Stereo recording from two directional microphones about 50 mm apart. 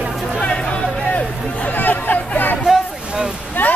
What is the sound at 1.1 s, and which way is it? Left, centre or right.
Hubbub, left.